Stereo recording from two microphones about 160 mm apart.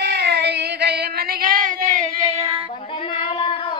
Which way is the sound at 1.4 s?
60° right (ahead or behind).